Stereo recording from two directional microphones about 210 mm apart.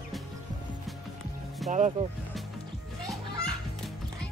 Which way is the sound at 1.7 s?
35° right (ahead or behind).